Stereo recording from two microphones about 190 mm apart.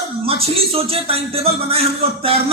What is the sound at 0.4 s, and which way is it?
A man's voice, 30° right (ahead or behind).